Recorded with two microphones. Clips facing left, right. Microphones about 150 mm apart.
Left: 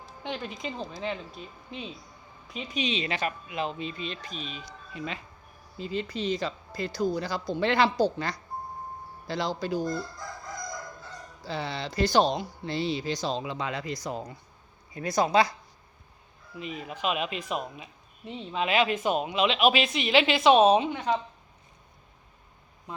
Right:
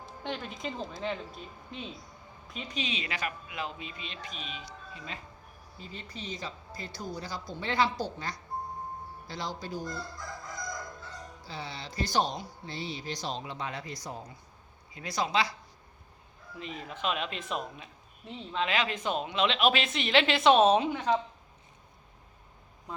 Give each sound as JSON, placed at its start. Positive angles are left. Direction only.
{"t": 0.2, "sound": "a woman's voice", "side_deg": 0}
{"t": 2.7, "sound": "speech", "side_deg": 25}
{"t": 4.9, "sound": "speech", "side_deg": 80}
{"t": 5.7, "sound": "speech", "side_deg": 90}
{"t": 11.4, "sound": "speech", "side_deg": 75}
{"t": 14.9, "sound": "speech", "side_deg": 45}
{"t": 16.6, "sound": "a woman's voice", "side_deg": 10}